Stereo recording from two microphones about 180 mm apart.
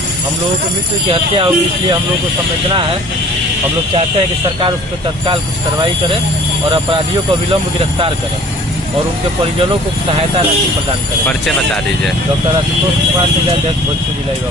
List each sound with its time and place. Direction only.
1.3 s speech: 30° right (ahead or behind)
5.2 s speech: 25° right (ahead or behind)
11.2 s speech: 5° left (ahead or behind)